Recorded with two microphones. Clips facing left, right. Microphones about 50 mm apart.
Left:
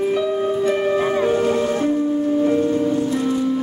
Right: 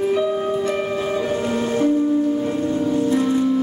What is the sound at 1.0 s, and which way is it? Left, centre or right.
Music, left.